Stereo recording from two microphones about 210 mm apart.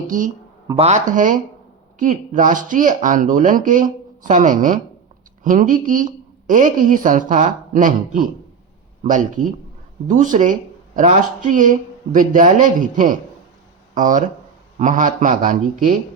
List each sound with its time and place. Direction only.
0.1 s speech: 40° right (ahead or behind)